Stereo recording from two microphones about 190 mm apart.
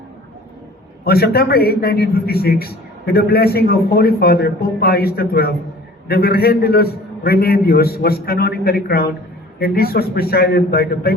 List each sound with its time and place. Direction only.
1.0 s a man's voice: 55° left (ahead or behind)